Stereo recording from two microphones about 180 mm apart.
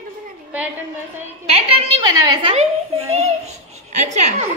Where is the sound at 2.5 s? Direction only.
35° right (ahead or behind).